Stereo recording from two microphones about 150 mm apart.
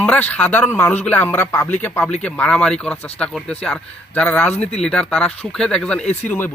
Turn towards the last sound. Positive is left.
turn(degrees=10)  # may be behind; listen again after turning